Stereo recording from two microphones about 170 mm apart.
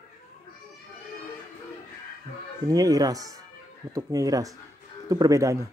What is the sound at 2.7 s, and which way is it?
Speech, 20° right (ahead or behind).